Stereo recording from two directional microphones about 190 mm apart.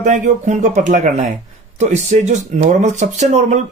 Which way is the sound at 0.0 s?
40° right (ahead or behind).